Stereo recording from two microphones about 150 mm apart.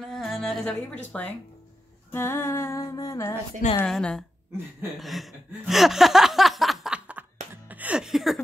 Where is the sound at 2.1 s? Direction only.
15° left (ahead or behind).